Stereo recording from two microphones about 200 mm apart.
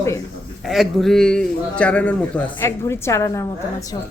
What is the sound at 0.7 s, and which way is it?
A woman's voice, centre (ahead or behind).